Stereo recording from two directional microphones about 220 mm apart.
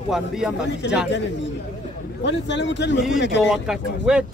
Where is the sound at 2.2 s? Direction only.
55° left (ahead or behind).